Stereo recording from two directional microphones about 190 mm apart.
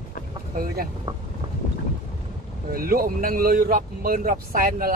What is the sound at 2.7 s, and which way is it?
Speech, 50° right (ahead or behind).